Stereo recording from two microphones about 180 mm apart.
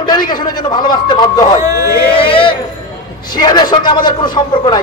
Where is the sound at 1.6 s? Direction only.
15° right (ahead or behind).